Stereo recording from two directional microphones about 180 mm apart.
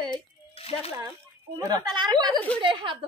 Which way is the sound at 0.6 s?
35° left (ahead or behind).